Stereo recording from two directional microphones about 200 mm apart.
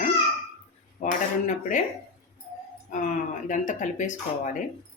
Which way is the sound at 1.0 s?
35° left (ahead or behind).